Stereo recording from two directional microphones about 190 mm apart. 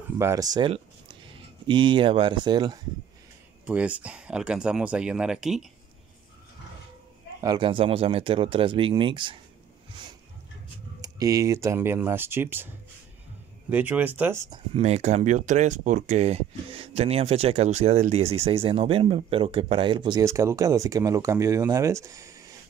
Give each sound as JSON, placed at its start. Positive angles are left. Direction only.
{"t": 0.2, "sound": "speech", "side_deg": -15}
{"t": 3.6, "sound": "speech", "side_deg": -5}
{"t": 7.4, "sound": "speech", "side_deg": -25}
{"t": 11.0, "sound": "speech", "side_deg": -20}
{"t": 13.7, "sound": "speech", "side_deg": -10}
{"t": 14.7, "sound": "speech", "side_deg": -35}